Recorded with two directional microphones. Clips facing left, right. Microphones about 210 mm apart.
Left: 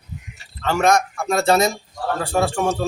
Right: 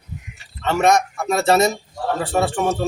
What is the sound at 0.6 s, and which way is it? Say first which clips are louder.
A man's voice: right 1 dB; centre (ahead or behind).